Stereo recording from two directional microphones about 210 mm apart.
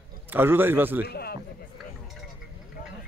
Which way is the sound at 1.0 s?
50° left (ahead or behind).